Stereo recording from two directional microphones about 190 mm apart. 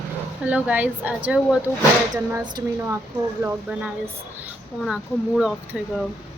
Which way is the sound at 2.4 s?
20° right (ahead or behind).